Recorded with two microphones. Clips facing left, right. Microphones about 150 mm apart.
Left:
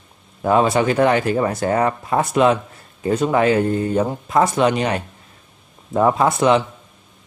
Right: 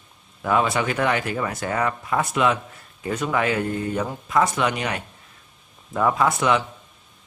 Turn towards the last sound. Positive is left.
turn(degrees=30)  # may be behind; listen again after turning